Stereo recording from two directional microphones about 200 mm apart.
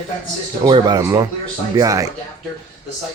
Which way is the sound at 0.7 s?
20° right (ahead or behind).